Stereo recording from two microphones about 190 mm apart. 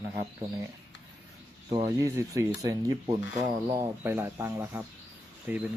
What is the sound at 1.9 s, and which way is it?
Speech, 15° right (ahead or behind).